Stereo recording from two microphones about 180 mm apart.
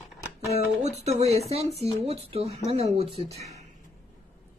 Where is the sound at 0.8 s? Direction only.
40° right (ahead or behind).